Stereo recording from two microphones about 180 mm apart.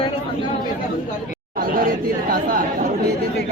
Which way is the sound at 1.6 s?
50° right (ahead or behind).